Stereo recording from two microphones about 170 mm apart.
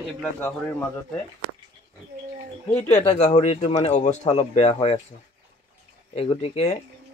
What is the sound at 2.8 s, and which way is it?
Speech, 40° left (ahead or behind).